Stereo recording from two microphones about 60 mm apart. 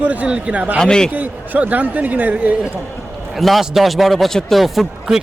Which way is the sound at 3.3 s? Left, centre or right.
Centre.